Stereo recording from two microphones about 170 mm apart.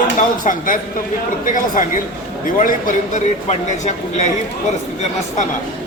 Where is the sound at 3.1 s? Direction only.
45° left (ahead or behind).